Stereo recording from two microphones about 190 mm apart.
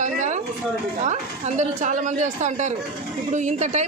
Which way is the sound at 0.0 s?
40° right (ahead or behind).